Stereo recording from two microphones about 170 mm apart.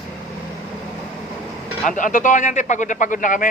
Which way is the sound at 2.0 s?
50° left (ahead or behind).